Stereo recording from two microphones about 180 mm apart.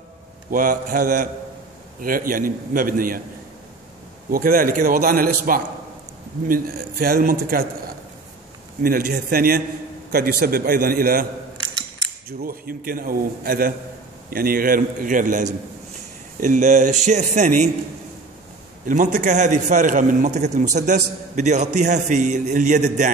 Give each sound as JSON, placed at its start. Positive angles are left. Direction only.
{"t": 0.5, "sound": "a man's voice", "side_deg": -50}
{"t": 4.3, "sound": "a man's voice", "side_deg": -55}
{"t": 8.8, "sound": "a man's voice", "side_deg": -55}
{"t": 12.3, "sound": "a man's voice", "side_deg": -55}
{"t": 18.9, "sound": "a man's voice", "side_deg": -45}